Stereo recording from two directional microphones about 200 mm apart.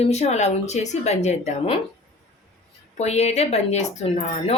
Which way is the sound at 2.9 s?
35° left (ahead or behind).